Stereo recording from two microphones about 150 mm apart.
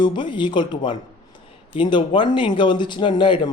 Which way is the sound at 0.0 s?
30° left (ahead or behind).